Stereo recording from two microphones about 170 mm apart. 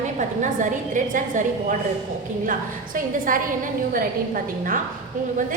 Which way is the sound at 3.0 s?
55° right (ahead or behind).